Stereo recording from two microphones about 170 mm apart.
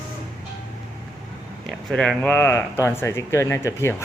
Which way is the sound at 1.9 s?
5° left (ahead or behind).